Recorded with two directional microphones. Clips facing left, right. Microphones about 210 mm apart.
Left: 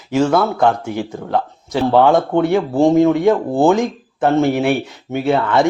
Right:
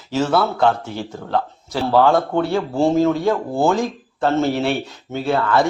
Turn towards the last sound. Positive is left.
turn(degrees=20)  # may be behind; listen again after turning